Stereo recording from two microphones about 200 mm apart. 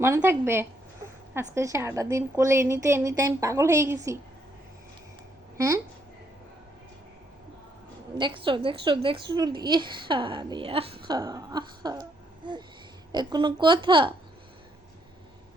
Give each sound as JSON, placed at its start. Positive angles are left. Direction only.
{"t": 0.0, "sound": "a woman's voice", "side_deg": -15}
{"t": 5.5, "sound": "speech", "side_deg": -15}
{"t": 8.2, "sound": "a woman's voice", "side_deg": -25}
{"t": 13.1, "sound": "a woman's voice", "side_deg": -20}